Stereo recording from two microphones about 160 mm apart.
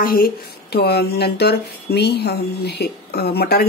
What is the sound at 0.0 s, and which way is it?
Speech, 65° left (ahead or behind).